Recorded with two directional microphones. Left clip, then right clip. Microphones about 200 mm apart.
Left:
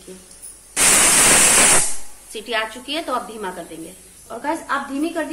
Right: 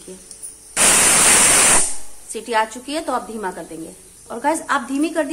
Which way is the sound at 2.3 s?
30° right (ahead or behind).